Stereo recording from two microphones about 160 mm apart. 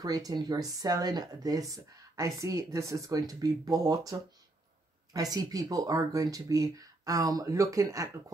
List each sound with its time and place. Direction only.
0.0 s speech: 25° right (ahead or behind)